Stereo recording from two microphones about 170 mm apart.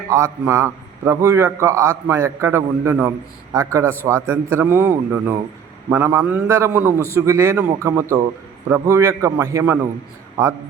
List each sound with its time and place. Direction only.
0.1 s a man's voice: 15° right (ahead or behind)